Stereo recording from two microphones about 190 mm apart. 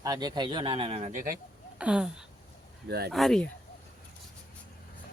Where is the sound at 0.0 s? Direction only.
20° right (ahead or behind); by 1.4 s 45° right (ahead or behind).